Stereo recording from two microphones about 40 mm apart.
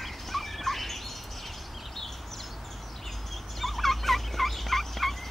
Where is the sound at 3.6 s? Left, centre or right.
Centre.